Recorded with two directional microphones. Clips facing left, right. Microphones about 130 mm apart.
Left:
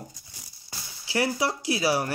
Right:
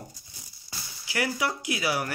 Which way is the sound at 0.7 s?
30° left (ahead or behind).